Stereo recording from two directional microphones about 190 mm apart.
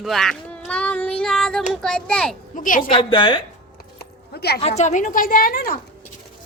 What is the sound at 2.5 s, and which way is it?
Speech, 45° left (ahead or behind).